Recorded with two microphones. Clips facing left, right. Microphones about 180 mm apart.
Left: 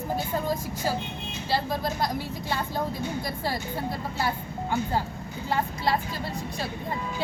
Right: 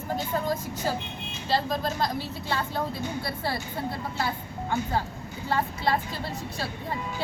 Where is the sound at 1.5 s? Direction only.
10° left (ahead or behind).